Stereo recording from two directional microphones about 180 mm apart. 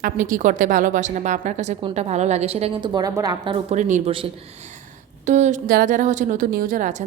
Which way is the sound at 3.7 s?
40° right (ahead or behind).